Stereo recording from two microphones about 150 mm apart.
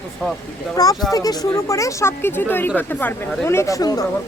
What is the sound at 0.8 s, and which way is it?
Speech, 25° left (ahead or behind).